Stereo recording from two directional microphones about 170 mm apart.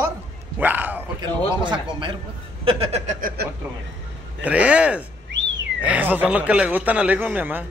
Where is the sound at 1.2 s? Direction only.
30° right (ahead or behind).